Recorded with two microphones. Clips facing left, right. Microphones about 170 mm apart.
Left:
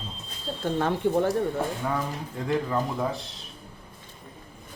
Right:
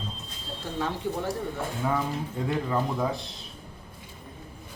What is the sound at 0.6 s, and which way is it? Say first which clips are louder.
Speech: left 6 dB; 55° left (ahead or behind).